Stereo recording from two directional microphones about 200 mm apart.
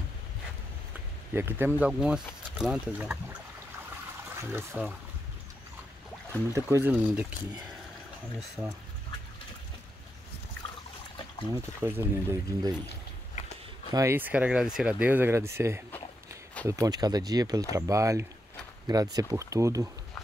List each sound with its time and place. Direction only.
1.3 s speech: 10° right (ahead or behind)
4.4 s speech: 10° right (ahead or behind)
6.5 s speech: 10° right (ahead or behind)
8.4 s speech: 5° right (ahead or behind)
11.5 s speech: 15° right (ahead or behind)
13.9 s speech: 10° right (ahead or behind)